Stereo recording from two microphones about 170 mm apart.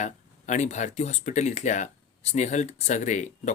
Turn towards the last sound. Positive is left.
turn(degrees=45)  # may be behind; listen again after turning